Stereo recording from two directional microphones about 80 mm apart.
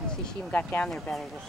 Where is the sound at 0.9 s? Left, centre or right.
Centre.